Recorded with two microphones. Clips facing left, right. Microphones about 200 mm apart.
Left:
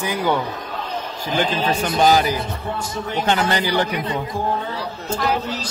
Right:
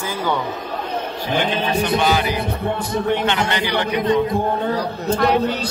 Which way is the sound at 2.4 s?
60° right (ahead or behind).